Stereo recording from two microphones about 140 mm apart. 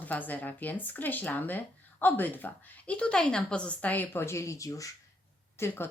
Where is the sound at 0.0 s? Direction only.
10° left (ahead or behind).